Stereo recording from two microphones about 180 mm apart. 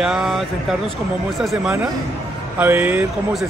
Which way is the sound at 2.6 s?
10° right (ahead or behind).